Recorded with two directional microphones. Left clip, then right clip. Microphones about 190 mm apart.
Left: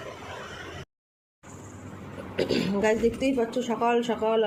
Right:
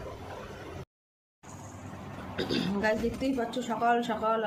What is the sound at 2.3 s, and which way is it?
A woman's voice, 15° left (ahead or behind).